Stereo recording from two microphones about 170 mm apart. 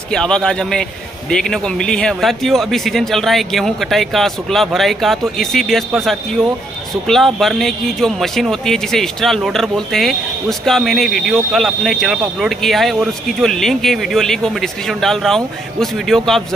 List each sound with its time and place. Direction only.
0.1 s speech: 5° left (ahead or behind)